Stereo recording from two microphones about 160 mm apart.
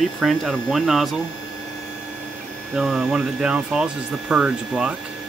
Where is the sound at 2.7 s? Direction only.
5° right (ahead or behind).